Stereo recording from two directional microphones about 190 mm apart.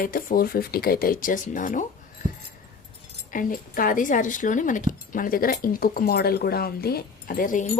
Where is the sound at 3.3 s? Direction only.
45° left (ahead or behind).